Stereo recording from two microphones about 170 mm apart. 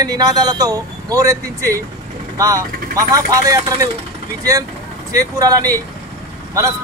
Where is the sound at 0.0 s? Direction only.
20° right (ahead or behind).